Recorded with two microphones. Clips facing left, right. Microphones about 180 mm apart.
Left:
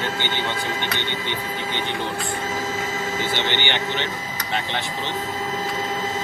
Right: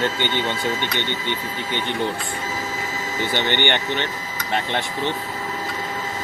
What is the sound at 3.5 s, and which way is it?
Speech, 50° right (ahead or behind).